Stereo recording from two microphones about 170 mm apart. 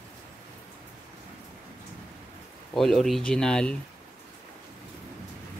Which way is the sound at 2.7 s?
Centre (ahead or behind).